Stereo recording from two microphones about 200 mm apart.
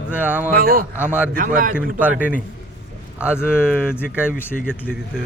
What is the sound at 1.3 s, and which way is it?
Speech, 45° right (ahead or behind).